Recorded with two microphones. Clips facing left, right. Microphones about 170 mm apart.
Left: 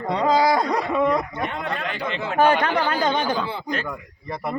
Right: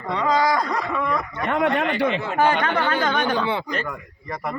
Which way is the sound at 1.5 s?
80° right.